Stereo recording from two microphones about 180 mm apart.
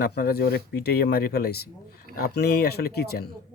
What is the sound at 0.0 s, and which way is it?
Speech, 60° left (ahead or behind).